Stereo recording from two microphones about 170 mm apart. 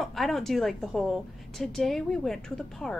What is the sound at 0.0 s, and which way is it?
A woman's voice, centre (ahead or behind).